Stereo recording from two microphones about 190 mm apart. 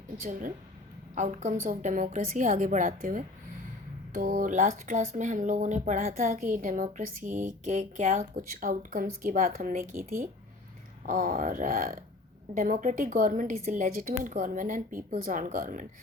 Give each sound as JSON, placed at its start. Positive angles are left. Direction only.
{"t": 0.2, "sound": "a woman's voice", "side_deg": -45}